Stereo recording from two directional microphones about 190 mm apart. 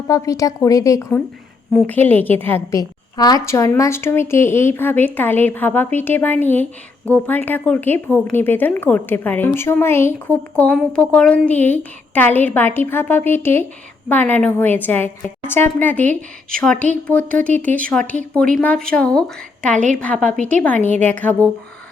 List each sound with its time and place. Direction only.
0.1 s a woman's voice: 15° left (ahead or behind)
20.8 s a woman's voice: 35° right (ahead or behind)
21.1 s a woman's voice: 10° left (ahead or behind)